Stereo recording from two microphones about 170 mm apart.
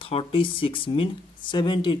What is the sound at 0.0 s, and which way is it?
Speech, 30° left (ahead or behind).